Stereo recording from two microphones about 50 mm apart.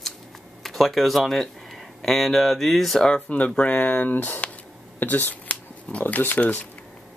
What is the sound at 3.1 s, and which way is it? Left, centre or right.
Speech, left.